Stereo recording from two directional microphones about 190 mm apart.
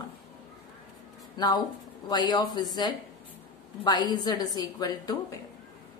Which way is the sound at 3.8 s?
20° left (ahead or behind).